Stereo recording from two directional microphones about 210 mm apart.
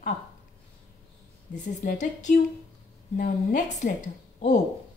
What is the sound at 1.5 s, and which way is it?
Speech, 35° left (ahead or behind).